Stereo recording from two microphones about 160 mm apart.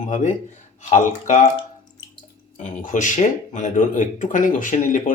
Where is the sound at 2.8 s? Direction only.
50° left (ahead or behind).